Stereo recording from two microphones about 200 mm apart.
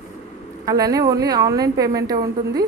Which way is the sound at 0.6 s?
15° right (ahead or behind).